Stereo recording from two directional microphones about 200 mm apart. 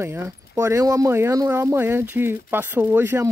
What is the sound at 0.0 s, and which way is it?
Speech, 15° right (ahead or behind).